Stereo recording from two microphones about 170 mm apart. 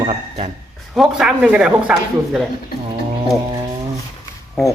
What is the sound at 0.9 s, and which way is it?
Speech, centre (ahead or behind).